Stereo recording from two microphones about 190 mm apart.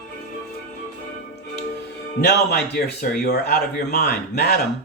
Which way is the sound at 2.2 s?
60° left (ahead or behind).